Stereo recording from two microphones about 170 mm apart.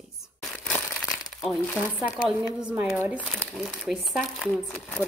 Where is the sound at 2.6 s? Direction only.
5° right (ahead or behind).